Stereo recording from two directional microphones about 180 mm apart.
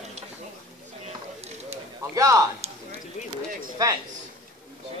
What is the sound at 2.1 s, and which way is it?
Speech, 20° right (ahead or behind).